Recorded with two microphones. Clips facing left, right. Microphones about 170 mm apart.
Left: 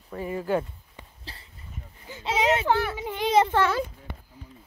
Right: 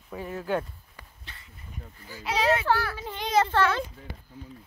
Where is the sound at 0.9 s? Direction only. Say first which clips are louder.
Left 6 dB; 30° left (ahead or behind).